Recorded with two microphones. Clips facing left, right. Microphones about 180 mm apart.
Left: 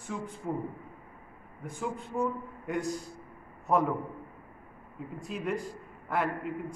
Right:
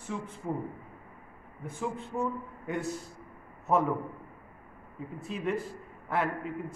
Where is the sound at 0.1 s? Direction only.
Centre (ahead or behind).